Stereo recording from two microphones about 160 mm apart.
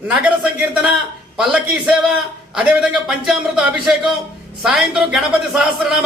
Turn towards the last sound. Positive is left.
turn(degrees=-5)  # may be behind; listen again after turning